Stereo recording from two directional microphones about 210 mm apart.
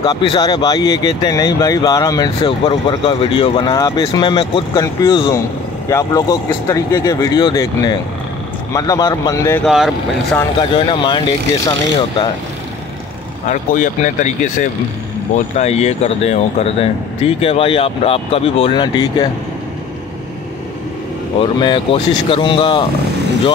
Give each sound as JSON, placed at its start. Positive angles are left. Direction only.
{"t": 0.0, "sound": "speech", "side_deg": 20}
{"t": 9.7, "sound": "speech", "side_deg": 0}
{"t": 10.6, "sound": "speech", "side_deg": 20}
{"t": 13.5, "sound": "speech", "side_deg": 35}
{"t": 21.4, "sound": "speech", "side_deg": 20}